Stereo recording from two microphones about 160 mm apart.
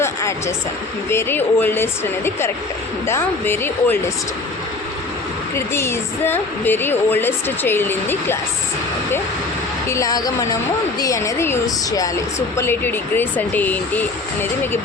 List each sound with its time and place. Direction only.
0.0 s a sound: 20° left (ahead or behind)
1.1 s a woman's voice: 15° left (ahead or behind)
5.5 s a woman's voice: 15° left (ahead or behind)
9.9 s a woman's voice: 20° left (ahead or behind)